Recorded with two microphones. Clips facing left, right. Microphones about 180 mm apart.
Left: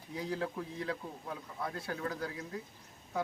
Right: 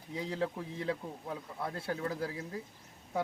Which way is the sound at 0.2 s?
25° right (ahead or behind).